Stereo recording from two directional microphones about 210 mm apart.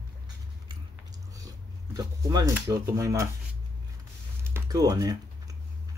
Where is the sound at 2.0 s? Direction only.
15° right (ahead or behind).